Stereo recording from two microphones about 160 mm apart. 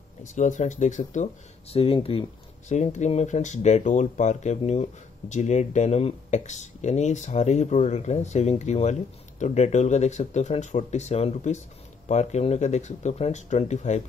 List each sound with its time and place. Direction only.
0.2 s speech: 50° left (ahead or behind)